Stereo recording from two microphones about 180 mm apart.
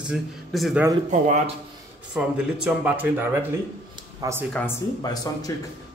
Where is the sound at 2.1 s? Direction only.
5° right (ahead or behind).